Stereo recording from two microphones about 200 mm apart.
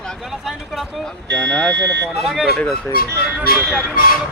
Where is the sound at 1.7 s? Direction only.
60° right (ahead or behind).